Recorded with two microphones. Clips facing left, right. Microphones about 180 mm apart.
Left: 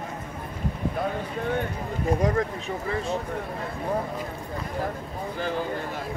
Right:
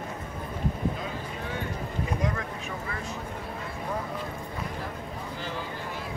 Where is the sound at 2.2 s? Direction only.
40° left (ahead or behind).